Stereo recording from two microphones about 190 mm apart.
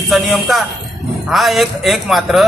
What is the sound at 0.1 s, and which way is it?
A man's voice, centre (ahead or behind).